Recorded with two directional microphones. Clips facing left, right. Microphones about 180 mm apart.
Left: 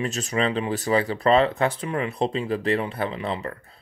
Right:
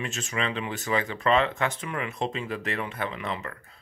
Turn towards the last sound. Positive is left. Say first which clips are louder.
# left 5 dB
turn(degrees=30)  # may be behind; listen again after turning